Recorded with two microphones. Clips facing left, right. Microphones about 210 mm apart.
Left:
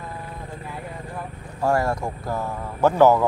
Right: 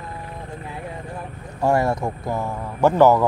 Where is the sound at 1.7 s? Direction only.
20° right (ahead or behind).